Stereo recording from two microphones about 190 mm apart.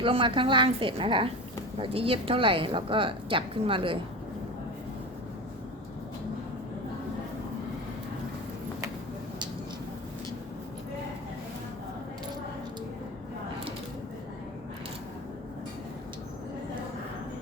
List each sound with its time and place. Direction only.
0.0 s a woman's voice: 25° right (ahead or behind)